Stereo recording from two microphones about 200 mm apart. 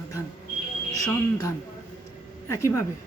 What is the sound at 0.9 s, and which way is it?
Speech, 15° left (ahead or behind).